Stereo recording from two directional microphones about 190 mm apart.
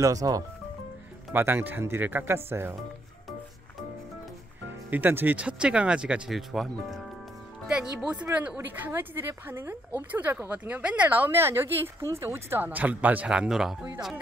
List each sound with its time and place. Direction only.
0.0 s speech: 20° right (ahead or behind)
4.9 s speech: 10° right (ahead or behind)
8.0 s speech: 5° right (ahead or behind)